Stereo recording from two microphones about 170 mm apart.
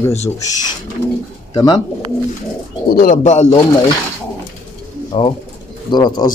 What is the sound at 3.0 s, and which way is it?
Speech, 45° left (ahead or behind).